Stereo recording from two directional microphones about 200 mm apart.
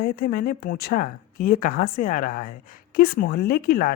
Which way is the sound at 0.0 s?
45° left (ahead or behind).